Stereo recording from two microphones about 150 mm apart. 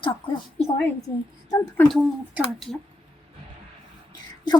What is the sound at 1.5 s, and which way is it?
Speech, 20° left (ahead or behind).